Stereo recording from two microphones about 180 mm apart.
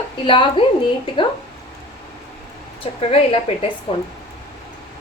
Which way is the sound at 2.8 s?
35° left (ahead or behind).